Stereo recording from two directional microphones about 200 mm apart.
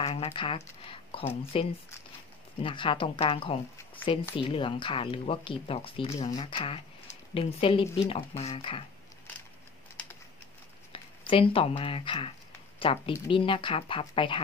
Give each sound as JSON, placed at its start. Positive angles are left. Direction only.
{"t": 0.0, "sound": "speech", "side_deg": 30}
{"t": 10.9, "sound": "speech", "side_deg": 25}